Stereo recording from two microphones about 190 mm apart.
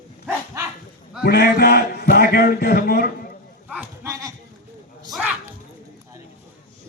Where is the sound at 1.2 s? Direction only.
55° left (ahead or behind).